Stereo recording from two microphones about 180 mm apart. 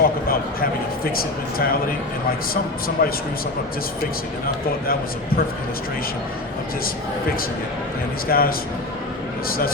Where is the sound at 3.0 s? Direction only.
55° left (ahead or behind).